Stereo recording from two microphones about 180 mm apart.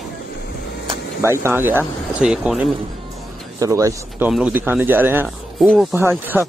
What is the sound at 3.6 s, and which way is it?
A man's voice, 20° right (ahead or behind).